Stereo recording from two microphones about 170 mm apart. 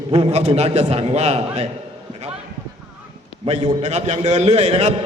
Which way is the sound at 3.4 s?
35° right (ahead or behind).